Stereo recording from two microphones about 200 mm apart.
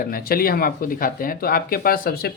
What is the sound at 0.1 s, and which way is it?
Speech, 45° left (ahead or behind).